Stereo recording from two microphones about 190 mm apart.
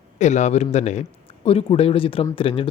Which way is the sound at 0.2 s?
40° left (ahead or behind).